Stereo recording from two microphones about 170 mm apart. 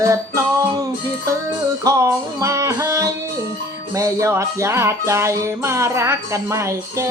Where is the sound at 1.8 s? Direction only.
20° right (ahead or behind).